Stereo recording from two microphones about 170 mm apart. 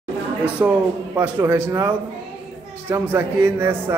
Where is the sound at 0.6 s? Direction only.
15° right (ahead or behind).